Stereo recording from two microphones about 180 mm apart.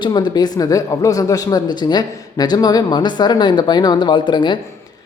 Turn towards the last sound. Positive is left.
turn(degrees=25)  # may be behind; listen again after turning